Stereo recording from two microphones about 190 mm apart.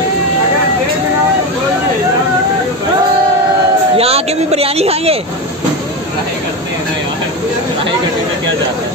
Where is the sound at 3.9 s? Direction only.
30° right (ahead or behind).